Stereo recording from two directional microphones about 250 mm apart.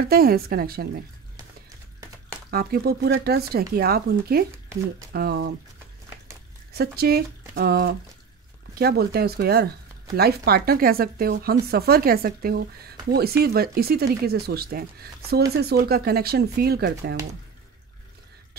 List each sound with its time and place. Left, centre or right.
0.1 s speech: right
2.5 s speech: right
6.7 s speech: right